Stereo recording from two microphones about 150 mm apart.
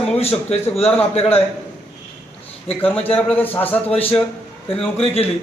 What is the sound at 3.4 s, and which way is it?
Speech, 10° left (ahead or behind).